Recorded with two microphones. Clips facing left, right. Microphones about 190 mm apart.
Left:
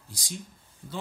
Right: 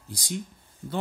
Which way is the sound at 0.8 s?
45° right (ahead or behind).